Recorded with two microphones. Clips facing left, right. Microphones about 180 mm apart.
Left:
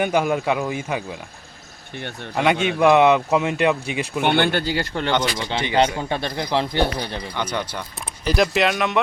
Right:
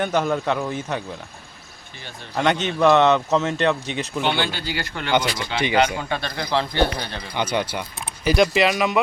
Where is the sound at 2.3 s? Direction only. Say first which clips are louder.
Left 1 dB; 5° left (ahead or behind).